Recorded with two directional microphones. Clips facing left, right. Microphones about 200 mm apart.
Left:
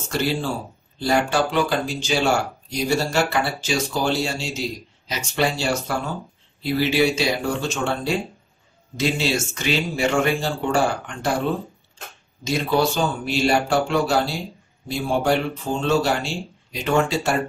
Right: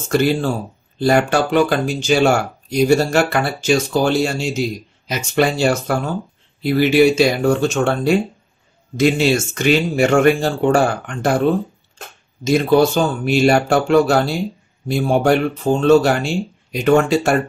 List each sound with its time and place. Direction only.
0.1 s speech: 55° right (ahead or behind)
12.4 s speech: 50° right (ahead or behind)